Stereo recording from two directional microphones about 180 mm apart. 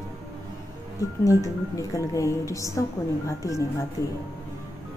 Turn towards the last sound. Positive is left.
turn(degrees=15)  # may be behind; listen again after turning